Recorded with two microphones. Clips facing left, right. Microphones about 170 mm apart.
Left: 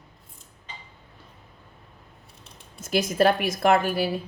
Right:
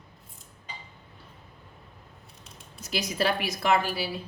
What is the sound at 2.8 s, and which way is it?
A woman's voice, 50° left (ahead or behind).